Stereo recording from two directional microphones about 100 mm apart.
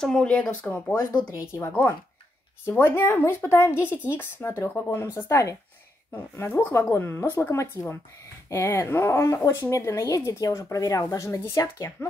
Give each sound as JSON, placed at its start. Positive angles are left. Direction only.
{"t": 0.0, "sound": "speech", "side_deg": 10}